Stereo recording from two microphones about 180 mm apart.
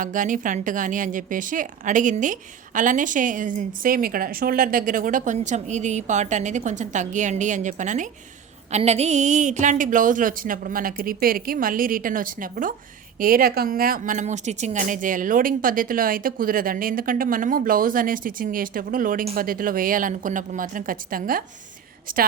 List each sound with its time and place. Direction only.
0.0 s a woman's voice: 45° right (ahead or behind)